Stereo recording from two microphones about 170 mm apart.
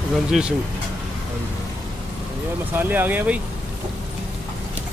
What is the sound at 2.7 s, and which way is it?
Speech, 10° right (ahead or behind).